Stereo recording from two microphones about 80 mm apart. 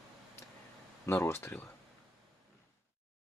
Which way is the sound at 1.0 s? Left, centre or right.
Left.